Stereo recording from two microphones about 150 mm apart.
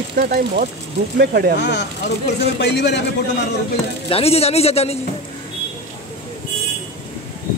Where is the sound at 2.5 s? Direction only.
90° left.